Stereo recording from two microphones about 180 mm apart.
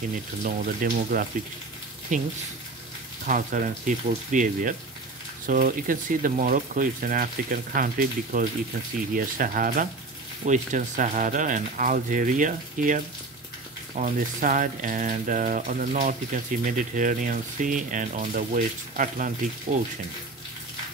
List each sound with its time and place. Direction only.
0.4 s speech: 45° right (ahead or behind)